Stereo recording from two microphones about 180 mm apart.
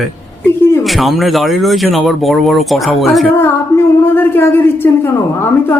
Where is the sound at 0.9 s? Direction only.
Centre (ahead or behind).